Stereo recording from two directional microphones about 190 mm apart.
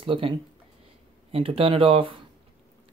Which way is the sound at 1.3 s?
30° right (ahead or behind).